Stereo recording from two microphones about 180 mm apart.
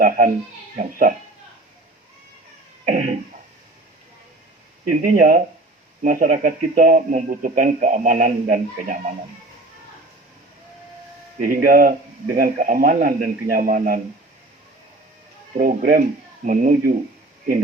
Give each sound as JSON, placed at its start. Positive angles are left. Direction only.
{"t": 0.8, "sound": "speech", "side_deg": -50}
{"t": 2.9, "sound": "cough", "side_deg": -50}
{"t": 4.9, "sound": "speech", "side_deg": -50}
{"t": 11.3, "sound": "speech", "side_deg": -50}
{"t": 15.5, "sound": "speech", "side_deg": -55}